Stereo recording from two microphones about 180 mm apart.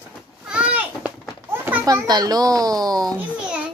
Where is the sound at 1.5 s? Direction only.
10° right (ahead or behind).